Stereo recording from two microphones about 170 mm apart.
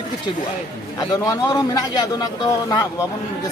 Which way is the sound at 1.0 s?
20° left (ahead or behind).